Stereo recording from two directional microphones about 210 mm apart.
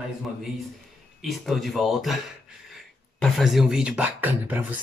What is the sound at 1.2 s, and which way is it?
Speech, centre (ahead or behind).